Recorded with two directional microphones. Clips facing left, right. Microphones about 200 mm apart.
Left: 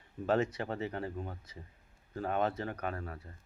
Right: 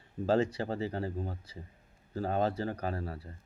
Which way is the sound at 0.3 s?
30° right (ahead or behind).